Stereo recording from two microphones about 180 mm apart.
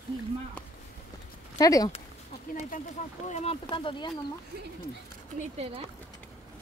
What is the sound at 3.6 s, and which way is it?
Speech, 25° left (ahead or behind).